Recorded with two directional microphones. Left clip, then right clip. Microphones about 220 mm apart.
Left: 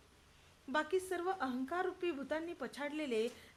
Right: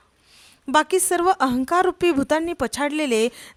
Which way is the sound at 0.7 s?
50° right (ahead or behind).